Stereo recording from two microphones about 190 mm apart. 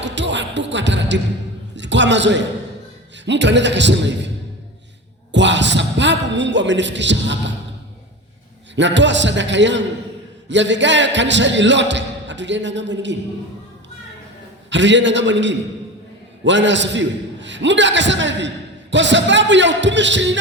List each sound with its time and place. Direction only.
0.0 s basketball bounce: 70° right (ahead or behind)
1.7 s a man's voice: 70° right (ahead or behind)
5.3 s a man's voice: 70° right (ahead or behind)
8.7 s a man's voice: 70° right (ahead or behind)
14.7 s a man's voice: 70° right (ahead or behind)